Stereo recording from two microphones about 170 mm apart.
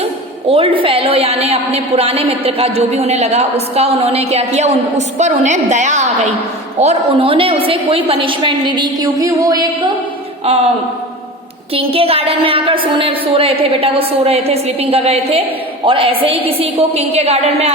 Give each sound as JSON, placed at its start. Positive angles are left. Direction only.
{"t": 0.0, "sound": "a woman's voice", "side_deg": -35}
{"t": 6.8, "sound": "a woman's voice", "side_deg": -35}
{"t": 10.4, "sound": "a woman's voice", "side_deg": -35}
{"t": 11.7, "sound": "a woman's voice", "side_deg": -35}